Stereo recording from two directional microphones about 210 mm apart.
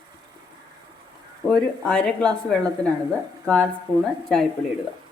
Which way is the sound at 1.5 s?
5° left (ahead or behind).